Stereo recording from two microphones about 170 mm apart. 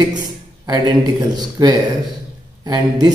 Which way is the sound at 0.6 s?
25° right (ahead or behind).